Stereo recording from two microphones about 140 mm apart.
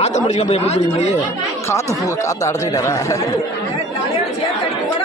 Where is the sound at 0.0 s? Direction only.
55° left (ahead or behind).